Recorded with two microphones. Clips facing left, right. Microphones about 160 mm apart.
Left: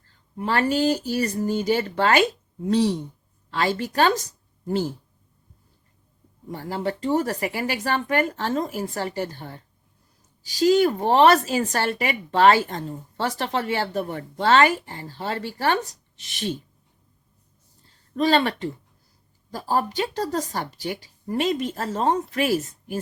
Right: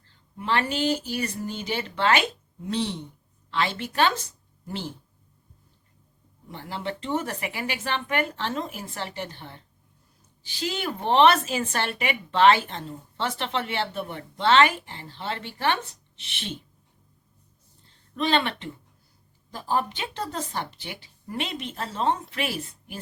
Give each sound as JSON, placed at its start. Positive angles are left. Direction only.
{"t": 0.3, "sound": "a woman's voice", "side_deg": 40}
{"t": 6.5, "sound": "a woman's voice", "side_deg": 40}
{"t": 18.2, "sound": "a woman's voice", "side_deg": 40}